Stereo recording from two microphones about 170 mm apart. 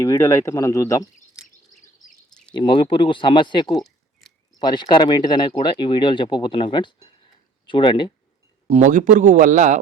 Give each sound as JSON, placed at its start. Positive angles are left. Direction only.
{"t": 0.0, "sound": "speech", "side_deg": 15}
{"t": 2.6, "sound": "speech", "side_deg": 30}
{"t": 8.6, "sound": "speech", "side_deg": -40}